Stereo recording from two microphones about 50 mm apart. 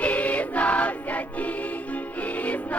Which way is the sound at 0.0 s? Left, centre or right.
Left.